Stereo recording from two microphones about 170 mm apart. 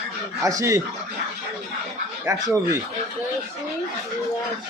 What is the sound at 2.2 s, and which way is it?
Speech, 20° right (ahead or behind).